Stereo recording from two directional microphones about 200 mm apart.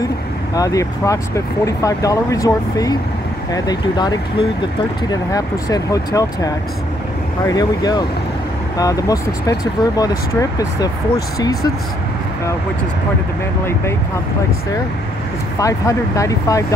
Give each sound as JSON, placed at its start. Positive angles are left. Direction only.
{"t": 0.6, "sound": "speech", "side_deg": 15}
{"t": 11.3, "sound": "speech", "side_deg": 15}
{"t": 15.6, "sound": "speech", "side_deg": 15}